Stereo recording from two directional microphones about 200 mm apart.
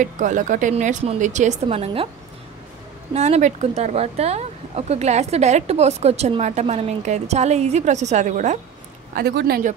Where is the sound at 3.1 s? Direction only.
35° right (ahead or behind).